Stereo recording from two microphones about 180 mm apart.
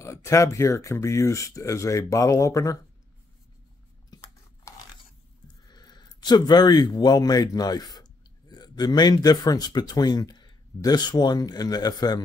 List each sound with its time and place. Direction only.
0.0 s speech: 15° left (ahead or behind)
5.7 s speech: 25° left (ahead or behind)